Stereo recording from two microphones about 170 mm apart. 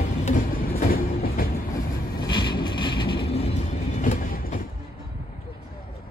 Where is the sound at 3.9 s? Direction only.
50° left (ahead or behind).